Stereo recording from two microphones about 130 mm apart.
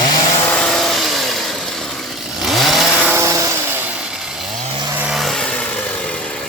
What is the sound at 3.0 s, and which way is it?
Vehicle, 20° right (ahead or behind).